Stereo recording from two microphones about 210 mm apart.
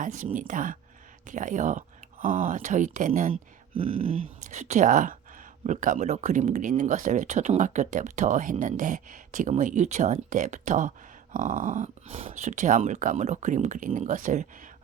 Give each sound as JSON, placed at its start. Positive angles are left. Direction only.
{"t": 0.0, "sound": "speech", "side_deg": -35}
{"t": 3.8, "sound": "speech", "side_deg": -25}